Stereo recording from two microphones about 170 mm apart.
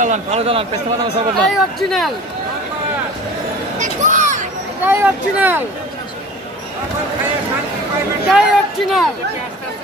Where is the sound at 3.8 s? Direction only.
50° right (ahead or behind).